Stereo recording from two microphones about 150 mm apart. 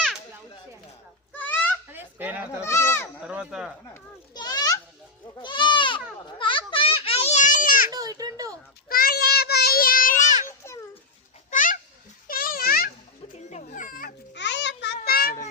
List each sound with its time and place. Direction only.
1.3 s a sound: 10° left (ahead or behind)
1.9 s honk: 15° right (ahead or behind)
2.6 s goat: 20° left (ahead or behind)
3.2 s speech: 5° right (ahead or behind)
4.4 s children playing: 25° left (ahead or behind)
5.3 s goat: 30° left (ahead or behind)
6.2 s a sound: 35° left (ahead or behind); by 7.9 s 65° left (ahead or behind)
7.9 s children playing: 25° right (ahead or behind)
8.9 s child singing: 80° left; by 10.5 s 60° left (ahead or behind)
11.5 s a sound: 60° left (ahead or behind)
12.3 s a sound: 75° left (ahead or behind)
13.3 s music: 50° left (ahead or behind)
13.7 s music: 65° left (ahead or behind)
14.9 s cat: 85° left